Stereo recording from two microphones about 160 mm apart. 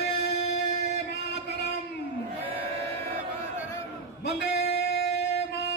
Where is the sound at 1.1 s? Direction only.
90° left.